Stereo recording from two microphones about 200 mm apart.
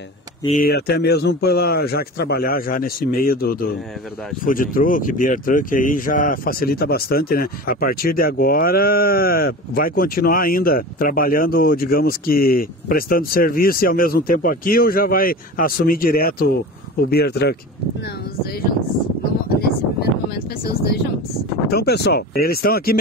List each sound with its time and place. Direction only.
0.5 s speech: 50° left (ahead or behind)
21.6 s speech: 50° left (ahead or behind)